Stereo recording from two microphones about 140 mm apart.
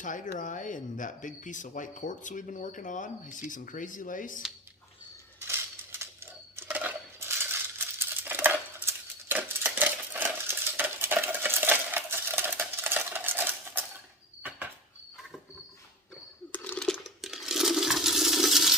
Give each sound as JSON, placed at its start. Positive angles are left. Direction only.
{"t": 0.0, "sound": "speech", "side_deg": 65}
{"t": 5.4, "sound": "a sound", "side_deg": -15}
{"t": 6.6, "sound": "coin", "side_deg": -15}
{"t": 16.5, "sound": "coin", "side_deg": 10}